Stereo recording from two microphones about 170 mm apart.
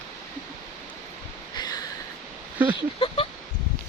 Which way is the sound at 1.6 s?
25° left (ahead or behind).